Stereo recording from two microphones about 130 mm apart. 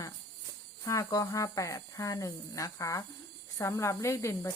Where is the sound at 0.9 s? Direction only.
25° left (ahead or behind).